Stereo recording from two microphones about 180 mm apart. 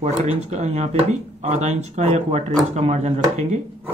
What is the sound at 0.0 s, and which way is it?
Speech, 40° right (ahead or behind).